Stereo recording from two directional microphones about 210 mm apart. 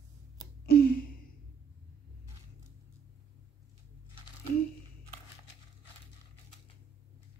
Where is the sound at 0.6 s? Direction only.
45° left (ahead or behind).